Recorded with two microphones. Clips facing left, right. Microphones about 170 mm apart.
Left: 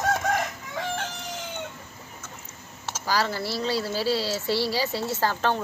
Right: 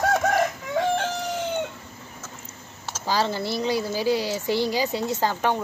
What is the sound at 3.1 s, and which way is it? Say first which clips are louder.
A woman's voice: right 2 dB; 20° right (ahead or behind).